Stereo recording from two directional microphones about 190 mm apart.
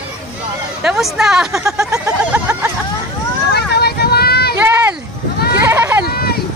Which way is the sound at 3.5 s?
55° left (ahead or behind).